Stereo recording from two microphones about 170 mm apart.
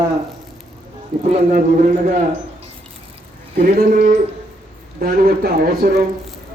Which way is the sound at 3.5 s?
60° right (ahead or behind).